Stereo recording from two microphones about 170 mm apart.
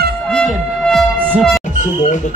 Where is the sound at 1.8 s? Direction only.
45° left (ahead or behind).